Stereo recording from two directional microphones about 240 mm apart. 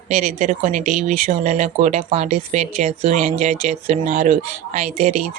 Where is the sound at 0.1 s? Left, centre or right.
Right.